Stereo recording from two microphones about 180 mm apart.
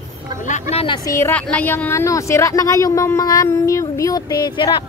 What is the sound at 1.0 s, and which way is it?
A woman's voice, 15° left (ahead or behind).